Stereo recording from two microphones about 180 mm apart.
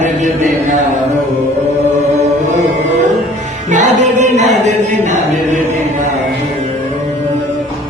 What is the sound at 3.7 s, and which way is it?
Music, 45° right (ahead or behind).